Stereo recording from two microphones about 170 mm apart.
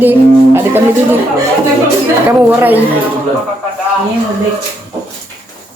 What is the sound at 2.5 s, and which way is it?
Speech, 10° right (ahead or behind).